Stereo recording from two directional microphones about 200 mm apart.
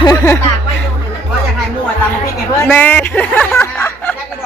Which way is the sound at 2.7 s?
10° left (ahead or behind).